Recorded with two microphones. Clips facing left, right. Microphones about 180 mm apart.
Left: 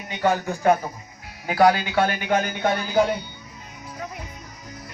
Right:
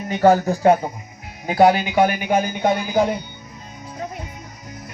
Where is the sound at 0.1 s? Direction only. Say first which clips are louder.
Right 7 dB; 40° right (ahead or behind); by 3.0 s 15° right (ahead or behind).